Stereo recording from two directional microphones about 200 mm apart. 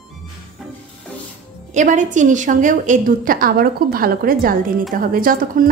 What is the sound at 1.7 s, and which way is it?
A woman's voice, 40° right (ahead or behind).